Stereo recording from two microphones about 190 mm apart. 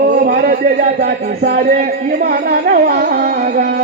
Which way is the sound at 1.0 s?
50° right (ahead or behind).